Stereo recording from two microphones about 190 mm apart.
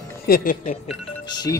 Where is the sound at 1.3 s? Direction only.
20° left (ahead or behind).